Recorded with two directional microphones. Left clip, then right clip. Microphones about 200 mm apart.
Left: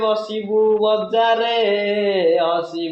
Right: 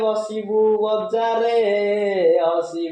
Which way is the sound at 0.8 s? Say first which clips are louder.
Left 4 dB; 15° left (ahead or behind).